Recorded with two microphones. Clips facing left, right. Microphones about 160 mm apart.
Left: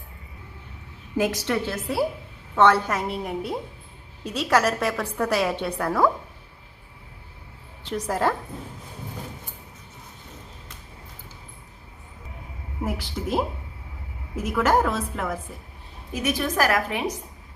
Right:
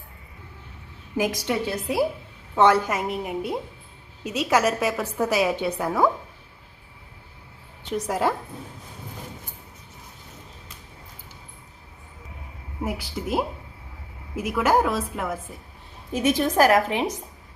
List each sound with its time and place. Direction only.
1.1 s a woman's voice: 10° right (ahead or behind)
7.9 s a woman's voice: 5° right (ahead or behind)
12.8 s a woman's voice: 5° right (ahead or behind)
14.4 s a woman's voice: 5° right (ahead or behind)
16.1 s a woman's voice: 25° right (ahead or behind)